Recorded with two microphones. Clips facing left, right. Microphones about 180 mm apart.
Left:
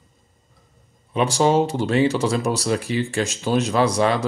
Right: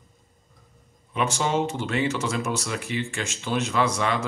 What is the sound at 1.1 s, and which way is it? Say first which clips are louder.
Speech: left 7 dB; 35° left (ahead or behind).